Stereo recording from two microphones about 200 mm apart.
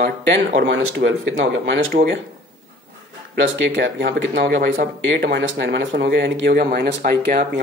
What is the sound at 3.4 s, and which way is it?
Speech, 65° right (ahead or behind).